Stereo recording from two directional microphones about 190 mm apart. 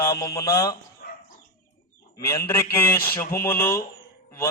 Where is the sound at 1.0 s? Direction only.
50° left (ahead or behind).